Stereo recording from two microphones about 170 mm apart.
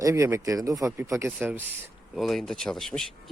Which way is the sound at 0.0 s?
15° right (ahead or behind).